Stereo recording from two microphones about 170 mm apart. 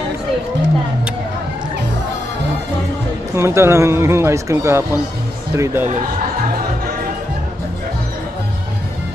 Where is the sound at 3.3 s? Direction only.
15° right (ahead or behind).